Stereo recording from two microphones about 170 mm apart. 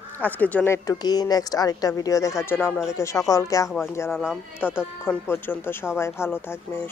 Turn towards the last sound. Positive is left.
turn(degrees=15)  # may be behind; listen again after turning